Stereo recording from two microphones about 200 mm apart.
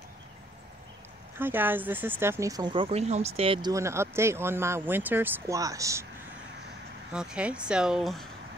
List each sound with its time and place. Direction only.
1.4 s speech: 10° right (ahead or behind); by 3.7 s 25° right (ahead or behind)
3.7 s speech: 15° right (ahead or behind)
7.1 s speech: 5° right (ahead or behind)